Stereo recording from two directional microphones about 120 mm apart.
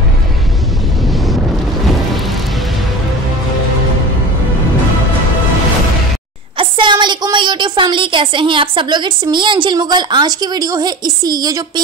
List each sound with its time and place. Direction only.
6.6 s a woman's voice: 40° right (ahead or behind)